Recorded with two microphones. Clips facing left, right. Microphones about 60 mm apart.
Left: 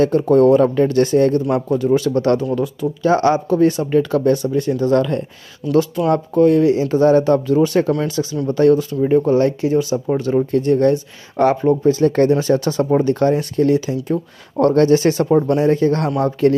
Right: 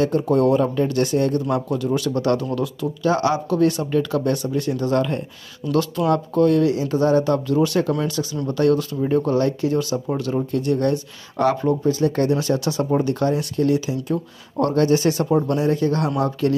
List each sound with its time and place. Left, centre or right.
0.0 s speech: left
6.0 s speech: left
10.3 s speech: left